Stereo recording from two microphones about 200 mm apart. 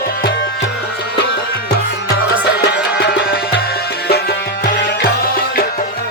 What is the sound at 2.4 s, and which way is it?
Music, 60° left (ahead or behind).